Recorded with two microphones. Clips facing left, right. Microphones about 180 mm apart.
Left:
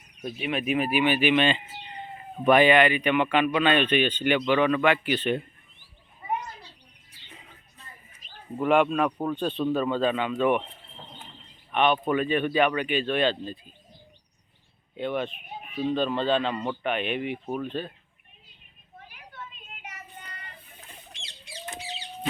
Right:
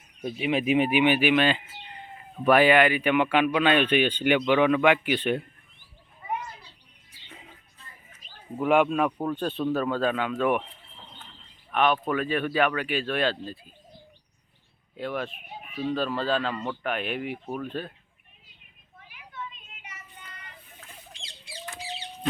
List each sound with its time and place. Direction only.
0.2 s speech: 10° right (ahead or behind)
0.4 s speech: 25° right (ahead or behind)
8.5 s speech: 5° right (ahead or behind)
11.7 s speech: centre (ahead or behind)
14.9 s speech: centre (ahead or behind)
19.0 s vehicle: 40° left (ahead or behind)